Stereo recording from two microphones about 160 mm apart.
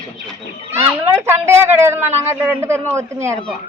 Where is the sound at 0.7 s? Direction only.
15° right (ahead or behind).